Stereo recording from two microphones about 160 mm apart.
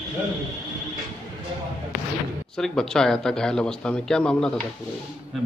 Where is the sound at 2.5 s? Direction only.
5° left (ahead or behind).